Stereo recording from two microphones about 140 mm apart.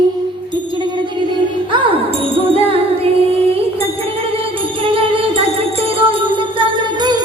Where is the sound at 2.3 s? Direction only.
40° right (ahead or behind).